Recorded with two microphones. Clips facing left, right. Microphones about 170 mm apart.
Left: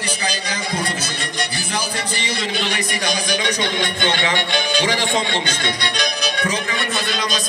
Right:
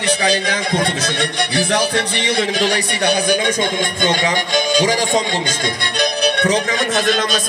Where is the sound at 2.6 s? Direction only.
35° right (ahead or behind).